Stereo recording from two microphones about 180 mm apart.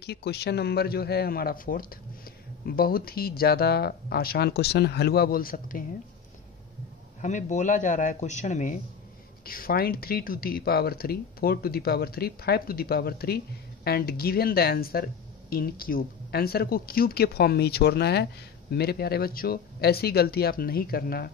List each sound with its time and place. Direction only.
0.0 s speech: 65° left (ahead or behind)
7.2 s a man's voice: 40° left (ahead or behind)
9.4 s speech: 55° left (ahead or behind)